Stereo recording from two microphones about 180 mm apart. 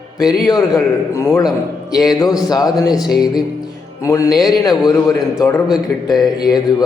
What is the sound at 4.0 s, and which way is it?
A man's voice, 20° left (ahead or behind).